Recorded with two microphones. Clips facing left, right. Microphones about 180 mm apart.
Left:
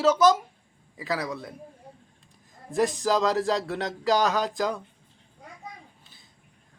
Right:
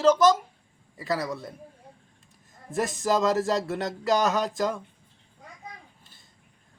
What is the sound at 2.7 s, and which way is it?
Speech, 5° right (ahead or behind).